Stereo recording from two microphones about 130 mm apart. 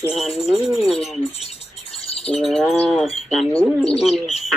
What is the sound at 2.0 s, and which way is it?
Bird, 50° left (ahead or behind).